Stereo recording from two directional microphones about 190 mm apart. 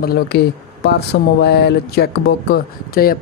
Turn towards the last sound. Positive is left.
turn(degrees=50)  # may be behind; listen again after turning